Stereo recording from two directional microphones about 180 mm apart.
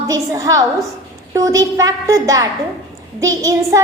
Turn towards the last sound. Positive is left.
turn(degrees=-20)  # may be behind; listen again after turning